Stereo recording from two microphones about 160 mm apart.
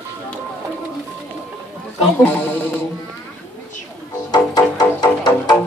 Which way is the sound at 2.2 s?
10° left (ahead or behind).